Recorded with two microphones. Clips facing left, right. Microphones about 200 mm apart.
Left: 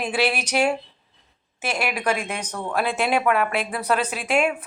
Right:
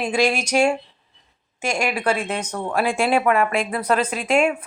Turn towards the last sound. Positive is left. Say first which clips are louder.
# right 3 dB
turn(degrees=5)  # may be behind; listen again after turning